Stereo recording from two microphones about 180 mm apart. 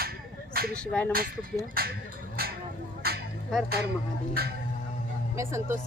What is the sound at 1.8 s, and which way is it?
Speech, 55° right (ahead or behind).